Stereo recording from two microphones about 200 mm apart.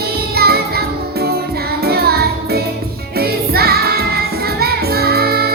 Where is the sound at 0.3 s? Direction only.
50° right (ahead or behind).